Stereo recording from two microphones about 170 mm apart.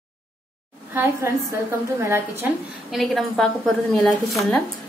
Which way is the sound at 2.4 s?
10° right (ahead or behind).